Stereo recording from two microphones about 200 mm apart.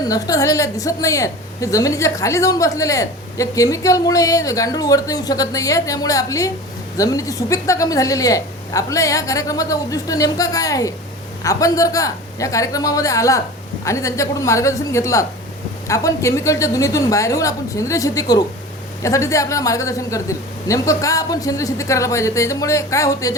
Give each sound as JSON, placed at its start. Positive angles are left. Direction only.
{"t": 0.0, "sound": "a woman's voice", "side_deg": 15}